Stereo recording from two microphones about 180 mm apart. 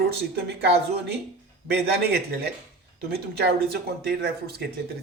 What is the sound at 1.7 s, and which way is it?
Speech, 60° right (ahead or behind).